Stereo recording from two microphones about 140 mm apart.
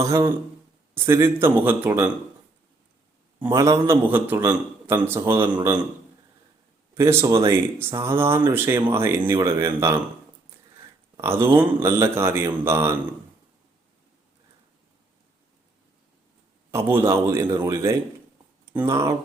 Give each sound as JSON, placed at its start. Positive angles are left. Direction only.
{"t": 0.0, "sound": "speech", "side_deg": -20}
{"t": 3.5, "sound": "speech", "side_deg": -25}
{"t": 6.9, "sound": "speech", "side_deg": -20}
{"t": 11.2, "sound": "speech", "side_deg": -15}
{"t": 16.7, "sound": "speech", "side_deg": -15}